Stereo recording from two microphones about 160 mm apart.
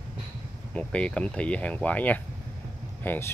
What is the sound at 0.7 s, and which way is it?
Speech, 5° left (ahead or behind).